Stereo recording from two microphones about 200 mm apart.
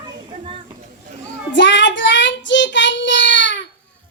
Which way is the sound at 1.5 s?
60° left (ahead or behind).